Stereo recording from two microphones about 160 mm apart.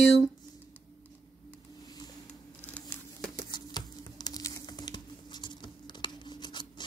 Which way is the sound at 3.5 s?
25° left (ahead or behind).